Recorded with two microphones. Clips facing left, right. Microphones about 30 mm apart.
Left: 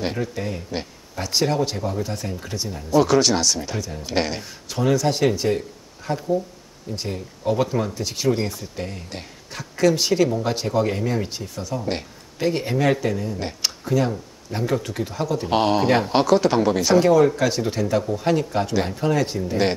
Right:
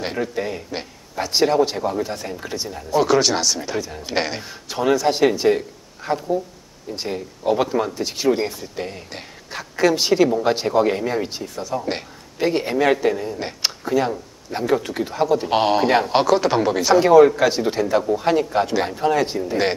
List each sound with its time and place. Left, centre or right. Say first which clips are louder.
0.0 s speech: right 2 dB; centre
17.0 s speech: right 8 dB; right